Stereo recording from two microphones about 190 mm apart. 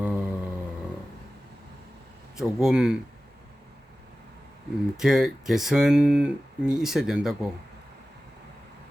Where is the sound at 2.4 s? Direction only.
Centre (ahead or behind).